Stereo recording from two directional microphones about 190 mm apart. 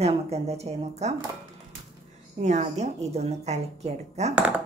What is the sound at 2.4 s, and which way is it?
A woman's voice, 35° right (ahead or behind).